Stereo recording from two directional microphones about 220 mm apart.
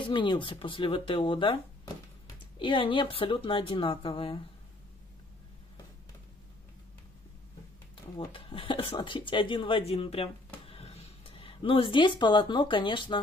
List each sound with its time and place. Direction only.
0.0 s speech: 20° left (ahead or behind)
2.6 s speech: 20° left (ahead or behind)
8.2 s speech: 25° left (ahead or behind)